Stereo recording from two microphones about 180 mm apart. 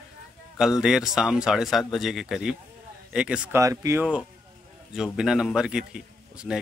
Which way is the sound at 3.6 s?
20° right (ahead or behind).